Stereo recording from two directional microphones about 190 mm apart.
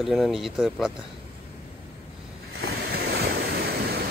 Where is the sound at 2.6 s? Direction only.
55° right (ahead or behind).